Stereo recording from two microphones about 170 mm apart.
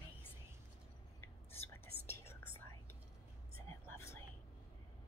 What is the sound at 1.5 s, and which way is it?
Whispering, 15° left (ahead or behind).